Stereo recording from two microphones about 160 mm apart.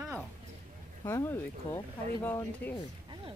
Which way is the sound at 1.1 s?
15° left (ahead or behind).